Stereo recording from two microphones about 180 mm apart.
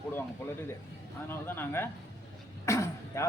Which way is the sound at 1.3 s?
10° left (ahead or behind).